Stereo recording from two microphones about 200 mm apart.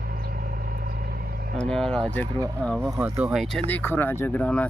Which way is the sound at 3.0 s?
10° right (ahead or behind).